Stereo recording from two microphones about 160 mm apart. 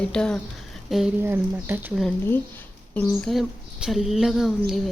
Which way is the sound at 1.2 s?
15° right (ahead or behind).